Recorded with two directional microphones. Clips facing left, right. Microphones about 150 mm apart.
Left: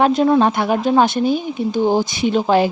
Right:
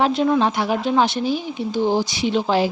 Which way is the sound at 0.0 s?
45° left (ahead or behind).